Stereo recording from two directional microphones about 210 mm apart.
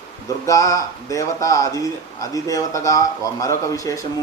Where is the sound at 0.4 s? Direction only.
15° left (ahead or behind).